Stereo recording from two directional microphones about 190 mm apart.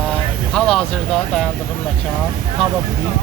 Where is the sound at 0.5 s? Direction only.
5° left (ahead or behind).